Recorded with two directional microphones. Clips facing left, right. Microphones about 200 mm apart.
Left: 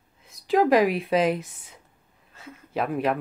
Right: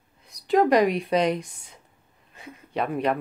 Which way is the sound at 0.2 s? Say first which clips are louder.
Right 1 dB; centre (ahead or behind).